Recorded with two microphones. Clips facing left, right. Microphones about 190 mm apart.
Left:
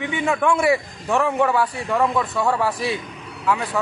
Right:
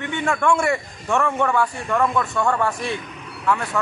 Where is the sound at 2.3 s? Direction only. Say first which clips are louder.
Even; 5° left (ahead or behind).